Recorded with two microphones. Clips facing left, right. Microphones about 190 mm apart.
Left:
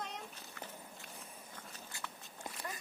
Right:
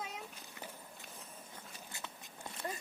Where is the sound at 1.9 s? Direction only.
20° right (ahead or behind).